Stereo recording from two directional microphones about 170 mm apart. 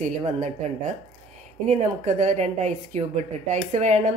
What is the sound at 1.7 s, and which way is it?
A woman's voice, 40° right (ahead or behind).